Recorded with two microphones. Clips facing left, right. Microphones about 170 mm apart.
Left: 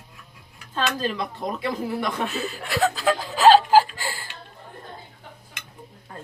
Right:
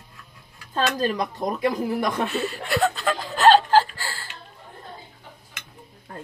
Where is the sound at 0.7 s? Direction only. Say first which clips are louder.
Right 2 dB; 40° right (ahead or behind).